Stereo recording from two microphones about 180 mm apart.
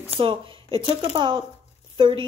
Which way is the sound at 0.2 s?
30° right (ahead or behind).